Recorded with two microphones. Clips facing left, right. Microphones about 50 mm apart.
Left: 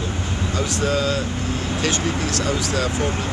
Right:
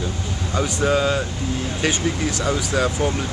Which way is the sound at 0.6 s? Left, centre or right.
Centre.